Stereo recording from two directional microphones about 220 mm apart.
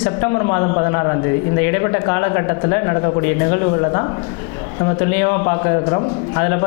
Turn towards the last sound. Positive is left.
turn(degrees=20)  # may be behind; listen again after turning